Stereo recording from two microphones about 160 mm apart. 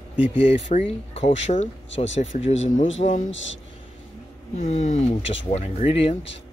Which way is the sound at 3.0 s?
55° left (ahead or behind).